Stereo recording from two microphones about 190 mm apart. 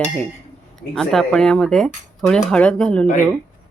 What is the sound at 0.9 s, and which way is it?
Speech, centre (ahead or behind).